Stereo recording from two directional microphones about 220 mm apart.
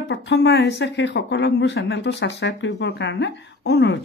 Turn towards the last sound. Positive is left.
turn(degrees=50)  # may be behind; listen again after turning